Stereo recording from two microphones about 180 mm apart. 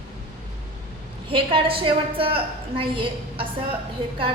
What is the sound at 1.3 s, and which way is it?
A woman's voice, 30° right (ahead or behind).